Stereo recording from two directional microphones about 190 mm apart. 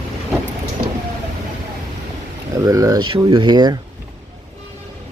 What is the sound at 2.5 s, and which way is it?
Speech, 20° right (ahead or behind).